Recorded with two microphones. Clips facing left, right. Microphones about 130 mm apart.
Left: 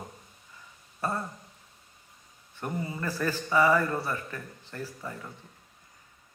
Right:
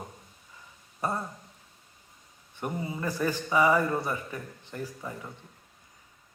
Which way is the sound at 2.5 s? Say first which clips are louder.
Even; 15° right (ahead or behind).